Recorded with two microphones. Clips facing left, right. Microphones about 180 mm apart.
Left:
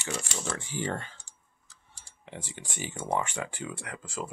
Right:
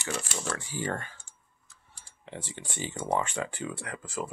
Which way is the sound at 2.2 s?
15° left (ahead or behind).